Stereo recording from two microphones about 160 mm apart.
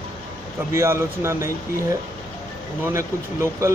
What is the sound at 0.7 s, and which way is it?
Speech, 15° right (ahead or behind).